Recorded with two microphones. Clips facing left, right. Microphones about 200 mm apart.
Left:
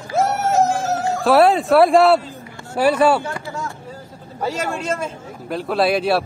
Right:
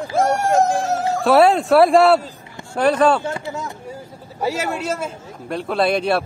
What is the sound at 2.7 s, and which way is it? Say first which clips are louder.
Speech: even; 5° left (ahead or behind).